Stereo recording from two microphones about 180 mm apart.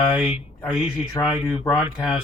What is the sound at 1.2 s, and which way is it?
Speech, 20° left (ahead or behind).